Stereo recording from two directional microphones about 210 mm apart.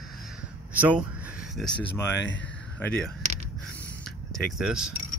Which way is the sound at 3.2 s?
30° right (ahead or behind).